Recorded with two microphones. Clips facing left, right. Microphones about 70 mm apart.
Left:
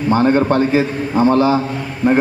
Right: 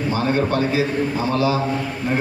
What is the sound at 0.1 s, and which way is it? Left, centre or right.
A man's voice, left.